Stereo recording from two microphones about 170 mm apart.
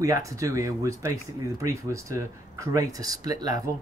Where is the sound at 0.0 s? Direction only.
20° right (ahead or behind).